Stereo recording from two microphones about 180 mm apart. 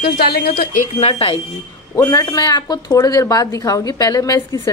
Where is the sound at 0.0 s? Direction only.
60° left (ahead or behind).